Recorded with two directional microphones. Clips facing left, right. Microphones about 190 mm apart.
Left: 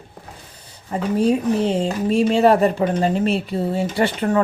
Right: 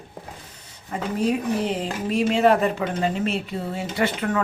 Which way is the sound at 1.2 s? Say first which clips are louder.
Left 5 dB; 30° left (ahead or behind).